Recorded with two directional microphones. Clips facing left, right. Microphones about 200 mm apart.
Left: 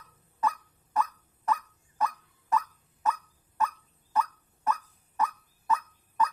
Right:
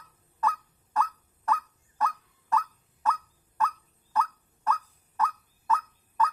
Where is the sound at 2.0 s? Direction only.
20° left (ahead or behind).